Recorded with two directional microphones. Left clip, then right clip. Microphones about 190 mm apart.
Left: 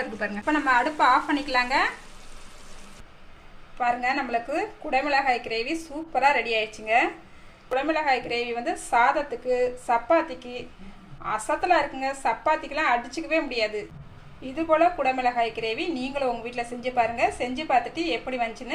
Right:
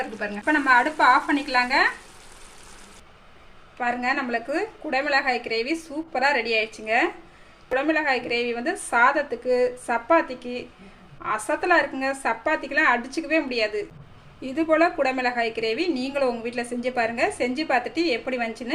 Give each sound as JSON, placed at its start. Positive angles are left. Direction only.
{"t": 0.4, "sound": "a woman's voice", "side_deg": -15}
{"t": 3.8, "sound": "a woman's voice", "side_deg": -15}